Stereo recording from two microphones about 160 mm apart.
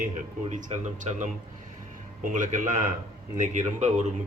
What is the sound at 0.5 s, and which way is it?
Speech, 50° right (ahead or behind).